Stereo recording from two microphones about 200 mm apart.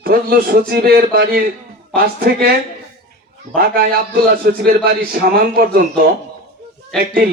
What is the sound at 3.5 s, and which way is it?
A man's voice, 50° right (ahead or behind).